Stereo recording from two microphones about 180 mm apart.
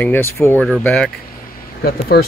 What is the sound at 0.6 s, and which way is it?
Speech, centre (ahead or behind).